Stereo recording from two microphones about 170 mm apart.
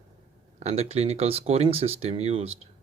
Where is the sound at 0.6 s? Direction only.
40° right (ahead or behind).